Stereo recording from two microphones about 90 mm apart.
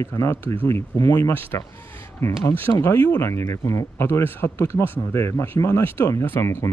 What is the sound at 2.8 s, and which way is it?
Speech, 25° left (ahead or behind).